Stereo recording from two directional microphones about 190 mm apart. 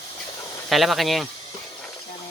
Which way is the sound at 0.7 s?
Centre (ahead or behind).